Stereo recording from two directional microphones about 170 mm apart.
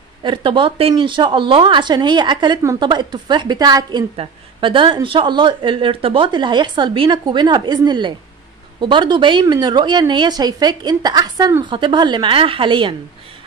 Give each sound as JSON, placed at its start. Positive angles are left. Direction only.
{"t": 0.2, "sound": "a woman's voice", "side_deg": -30}